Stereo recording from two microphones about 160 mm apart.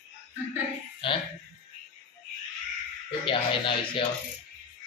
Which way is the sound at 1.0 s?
30° left (ahead or behind).